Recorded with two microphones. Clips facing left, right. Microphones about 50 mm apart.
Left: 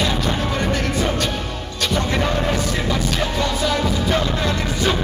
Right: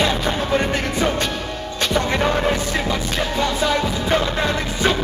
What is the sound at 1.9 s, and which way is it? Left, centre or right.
Music, right.